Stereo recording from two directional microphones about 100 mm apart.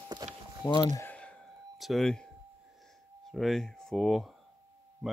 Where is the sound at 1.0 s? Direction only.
15° left (ahead or behind).